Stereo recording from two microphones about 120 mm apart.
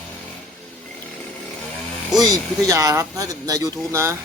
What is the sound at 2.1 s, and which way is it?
Speech, 30° right (ahead or behind).